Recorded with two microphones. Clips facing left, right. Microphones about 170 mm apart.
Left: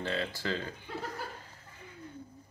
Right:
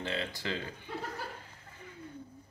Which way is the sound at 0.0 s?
20° right (ahead or behind).